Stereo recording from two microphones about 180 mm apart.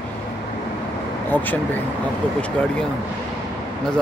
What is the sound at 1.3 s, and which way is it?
Speech, 10° left (ahead or behind).